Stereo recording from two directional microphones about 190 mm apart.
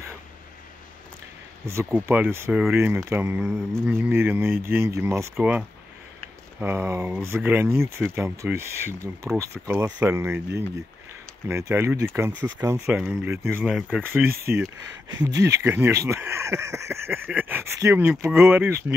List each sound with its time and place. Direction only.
1.7 s speech: 15° right (ahead or behind)